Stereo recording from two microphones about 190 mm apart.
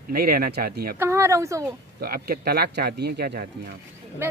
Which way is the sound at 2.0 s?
50° right (ahead or behind).